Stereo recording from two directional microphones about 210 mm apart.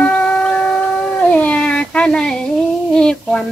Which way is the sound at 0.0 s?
5° left (ahead or behind).